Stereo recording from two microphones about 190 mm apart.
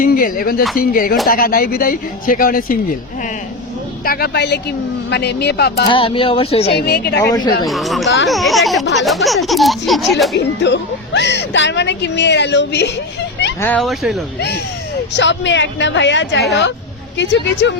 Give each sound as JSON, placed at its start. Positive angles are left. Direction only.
{"t": 0.0, "sound": "speech", "side_deg": 50}
{"t": 4.0, "sound": "speech", "side_deg": 50}
{"t": 5.9, "sound": "speech", "side_deg": 30}
{"t": 6.7, "sound": "speech", "side_deg": 55}
{"t": 7.2, "sound": "speech", "side_deg": 20}
{"t": 7.6, "sound": "speech", "side_deg": 0}
{"t": 10.3, "sound": "speech", "side_deg": 65}
{"t": 13.6, "sound": "speech", "side_deg": 5}
{"t": 14.3, "sound": "a woman's voice", "side_deg": 60}